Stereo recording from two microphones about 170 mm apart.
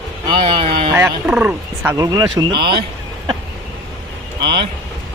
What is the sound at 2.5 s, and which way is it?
Speech, 65° right (ahead or behind).